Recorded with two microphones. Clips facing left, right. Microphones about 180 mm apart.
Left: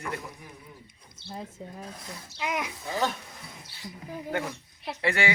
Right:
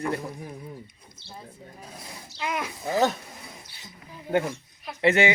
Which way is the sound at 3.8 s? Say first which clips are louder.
Left 4 dB; 20° right (ahead or behind).